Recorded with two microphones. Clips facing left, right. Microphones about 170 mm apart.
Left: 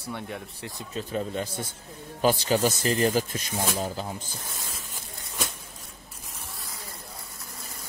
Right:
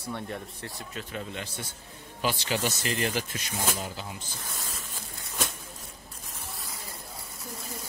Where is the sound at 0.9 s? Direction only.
40° left (ahead or behind).